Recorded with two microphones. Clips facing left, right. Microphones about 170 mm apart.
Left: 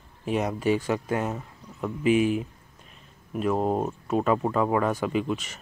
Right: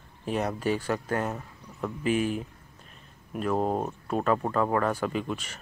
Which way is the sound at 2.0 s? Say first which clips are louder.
Left 5 dB; 45° right (ahead or behind).